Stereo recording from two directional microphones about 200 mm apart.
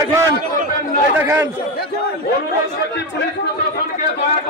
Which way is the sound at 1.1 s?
10° right (ahead or behind).